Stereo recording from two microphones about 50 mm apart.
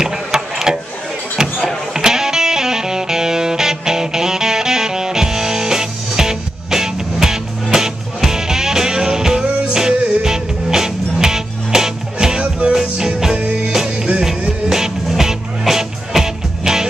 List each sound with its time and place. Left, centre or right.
0.0 s a sound: centre
2.0 s music: centre
14.7 s music: centre